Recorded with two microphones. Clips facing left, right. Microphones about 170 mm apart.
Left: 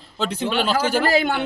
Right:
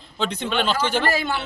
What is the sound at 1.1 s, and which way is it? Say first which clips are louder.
Speech: left 5 dB; 60° left (ahead or behind).